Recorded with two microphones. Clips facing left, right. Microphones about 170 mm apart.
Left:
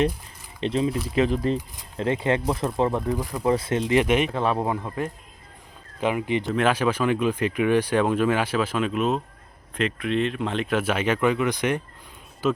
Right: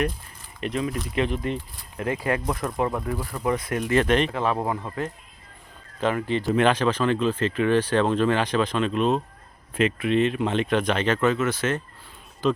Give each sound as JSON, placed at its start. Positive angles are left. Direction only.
{"t": 0.6, "sound": "speech", "side_deg": 30}
{"t": 1.5, "sound": "speech", "side_deg": 20}
{"t": 3.1, "sound": "speech", "side_deg": 15}
{"t": 3.4, "sound": "speech", "side_deg": 30}
{"t": 6.0, "sound": "speech", "side_deg": 10}